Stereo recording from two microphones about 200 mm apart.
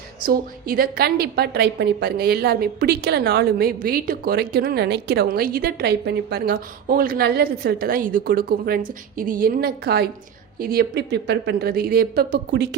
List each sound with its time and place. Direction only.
0.3 s a woman's voice: 45° right (ahead or behind)